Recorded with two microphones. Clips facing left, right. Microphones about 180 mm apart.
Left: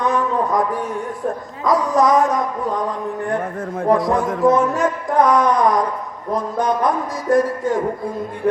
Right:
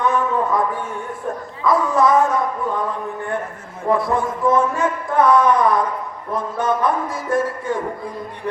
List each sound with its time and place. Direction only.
0.0 s a sound: 40° left (ahead or behind)
1.6 s speech: 40° left (ahead or behind)
4.5 s music: 40° left (ahead or behind)
6.3 s speech: 40° left (ahead or behind)